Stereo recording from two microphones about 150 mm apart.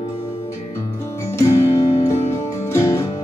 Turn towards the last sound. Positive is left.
turn(degrees=20)  # may be behind; listen again after turning